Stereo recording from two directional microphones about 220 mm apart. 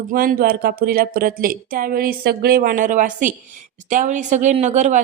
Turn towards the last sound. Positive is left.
turn(degrees=-30)  # may be behind; listen again after turning